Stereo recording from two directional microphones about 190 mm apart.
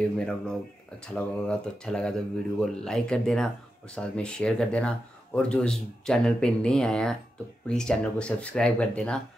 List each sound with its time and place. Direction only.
1.1 s speech: 5° left (ahead or behind)